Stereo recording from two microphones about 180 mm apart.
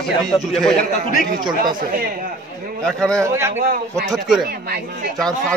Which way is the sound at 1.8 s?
50° right (ahead or behind).